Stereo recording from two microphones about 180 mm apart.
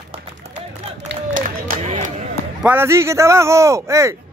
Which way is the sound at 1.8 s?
35° right (ahead or behind).